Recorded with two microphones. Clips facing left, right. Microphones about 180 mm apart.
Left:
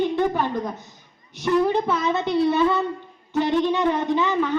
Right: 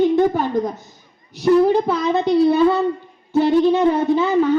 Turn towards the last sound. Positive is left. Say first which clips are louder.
# right 6 dB
turn(degrees=-40)  # may be behind; listen again after turning